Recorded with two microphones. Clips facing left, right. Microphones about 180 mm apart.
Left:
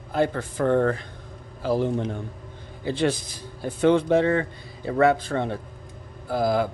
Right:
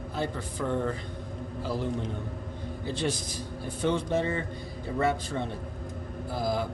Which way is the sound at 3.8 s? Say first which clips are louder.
Left 8 dB; 85° left.